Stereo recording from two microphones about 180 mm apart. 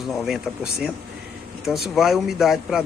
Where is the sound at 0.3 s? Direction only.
Centre (ahead or behind).